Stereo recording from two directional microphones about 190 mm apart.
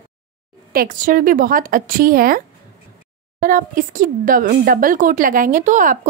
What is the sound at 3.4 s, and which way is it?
A woman's voice, 45° right (ahead or behind).